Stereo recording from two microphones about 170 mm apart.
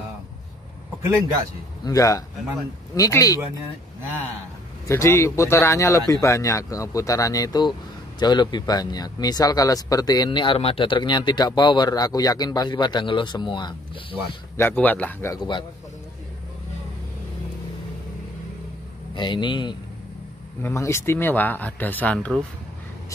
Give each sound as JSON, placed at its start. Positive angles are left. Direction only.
{"t": 1.0, "sound": "speech", "side_deg": -20}
{"t": 1.9, "sound": "a man's voice", "side_deg": 20}
{"t": 4.8, "sound": "a man's voice", "side_deg": 15}
{"t": 14.6, "sound": "speech", "side_deg": 10}
{"t": 15.3, "sound": "a man's voice", "side_deg": 25}
{"t": 19.1, "sound": "a man's voice", "side_deg": 30}
{"t": 20.6, "sound": "speech", "side_deg": 15}